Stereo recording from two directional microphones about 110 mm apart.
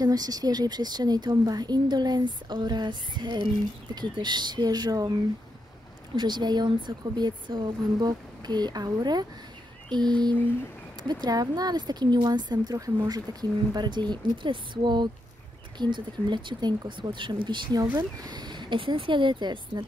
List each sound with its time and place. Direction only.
0.0 s speech: 35° right (ahead or behind)
6.1 s speech: 40° right (ahead or behind)